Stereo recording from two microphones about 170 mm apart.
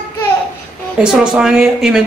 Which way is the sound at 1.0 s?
5° right (ahead or behind).